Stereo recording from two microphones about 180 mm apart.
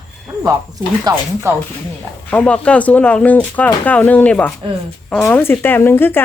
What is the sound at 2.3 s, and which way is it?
Speech, 5° left (ahead or behind).